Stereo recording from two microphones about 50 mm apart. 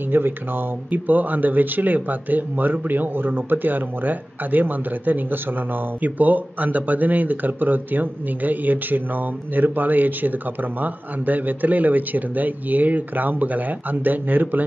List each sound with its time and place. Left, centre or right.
0.1 s speech: right